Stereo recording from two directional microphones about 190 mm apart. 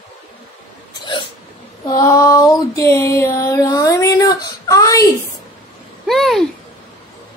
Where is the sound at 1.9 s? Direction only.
15° left (ahead or behind).